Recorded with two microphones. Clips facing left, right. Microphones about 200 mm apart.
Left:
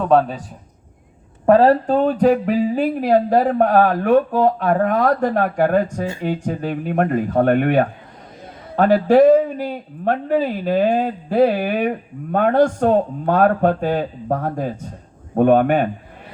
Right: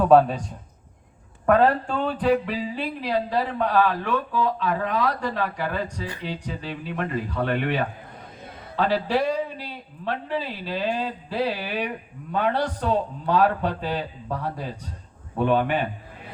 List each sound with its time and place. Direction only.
0.0 s a man's voice: centre (ahead or behind)
1.5 s speech: 35° left (ahead or behind)